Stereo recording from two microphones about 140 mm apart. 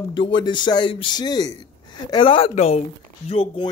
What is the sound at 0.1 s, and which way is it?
Speech, 35° left (ahead or behind).